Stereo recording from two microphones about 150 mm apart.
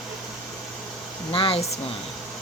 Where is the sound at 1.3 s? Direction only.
35° left (ahead or behind).